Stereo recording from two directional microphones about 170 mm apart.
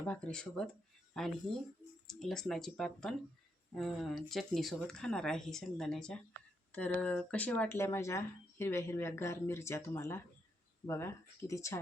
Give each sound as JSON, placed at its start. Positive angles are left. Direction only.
{"t": 0.0, "sound": "speech", "side_deg": 5}